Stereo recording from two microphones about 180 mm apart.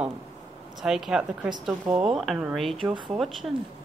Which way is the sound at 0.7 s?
Centre (ahead or behind).